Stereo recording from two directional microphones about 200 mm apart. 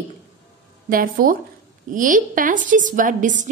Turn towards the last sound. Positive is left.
turn(degrees=-40)  # may be behind; listen again after turning